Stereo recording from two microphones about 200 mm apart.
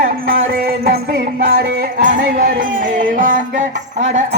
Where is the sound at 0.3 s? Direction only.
50° right (ahead or behind).